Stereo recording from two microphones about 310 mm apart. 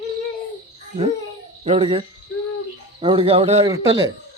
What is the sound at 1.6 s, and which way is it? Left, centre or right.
A man's voice, centre.